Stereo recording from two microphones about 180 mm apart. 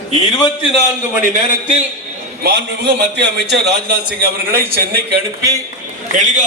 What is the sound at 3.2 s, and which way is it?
A man's voice, 65° right (ahead or behind).